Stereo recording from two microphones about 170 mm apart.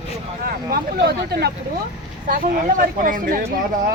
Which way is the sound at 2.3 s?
55° right (ahead or behind).